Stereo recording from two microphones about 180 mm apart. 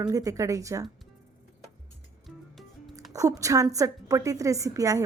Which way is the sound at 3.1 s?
20° right (ahead or behind).